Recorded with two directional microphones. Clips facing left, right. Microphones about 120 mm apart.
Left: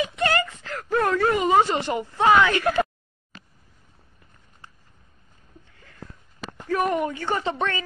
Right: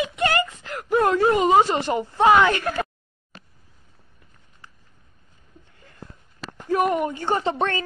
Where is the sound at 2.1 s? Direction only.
20° right (ahead or behind).